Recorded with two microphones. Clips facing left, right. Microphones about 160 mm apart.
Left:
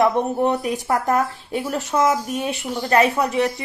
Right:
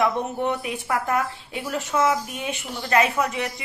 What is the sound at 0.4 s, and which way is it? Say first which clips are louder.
Speech: left 5 dB; 40° left (ahead or behind).